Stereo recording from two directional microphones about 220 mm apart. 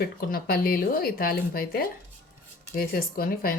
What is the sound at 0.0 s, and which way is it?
Speech, 45° left (ahead or behind).